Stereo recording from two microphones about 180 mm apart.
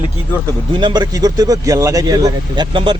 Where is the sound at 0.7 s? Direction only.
25° right (ahead or behind).